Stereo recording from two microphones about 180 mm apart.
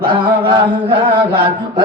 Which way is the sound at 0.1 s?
30° right (ahead or behind).